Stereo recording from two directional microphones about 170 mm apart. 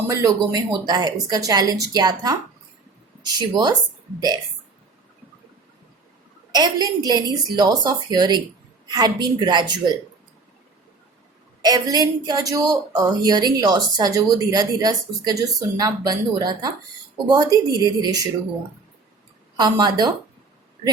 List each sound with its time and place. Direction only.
0.1 s a woman's voice: 20° right (ahead or behind)
6.5 s a woman's voice: 25° right (ahead or behind)
11.6 s a woman's voice: 25° right (ahead or behind)
19.5 s a woman's voice: 25° right (ahead or behind)